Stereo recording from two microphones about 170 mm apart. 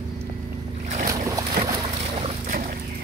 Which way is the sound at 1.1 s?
20° right (ahead or behind).